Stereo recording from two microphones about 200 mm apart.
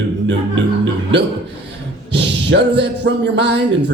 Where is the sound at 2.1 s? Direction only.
60° right (ahead or behind).